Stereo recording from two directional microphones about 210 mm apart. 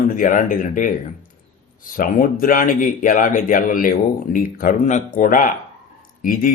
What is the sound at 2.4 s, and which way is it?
Speech, 40° left (ahead or behind).